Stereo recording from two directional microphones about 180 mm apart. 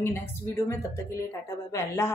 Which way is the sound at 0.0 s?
15° left (ahead or behind).